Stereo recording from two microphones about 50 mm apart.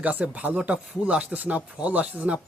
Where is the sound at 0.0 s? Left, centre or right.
Right.